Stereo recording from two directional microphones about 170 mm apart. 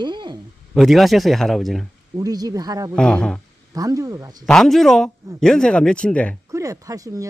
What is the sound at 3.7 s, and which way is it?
Speech, 20° right (ahead or behind).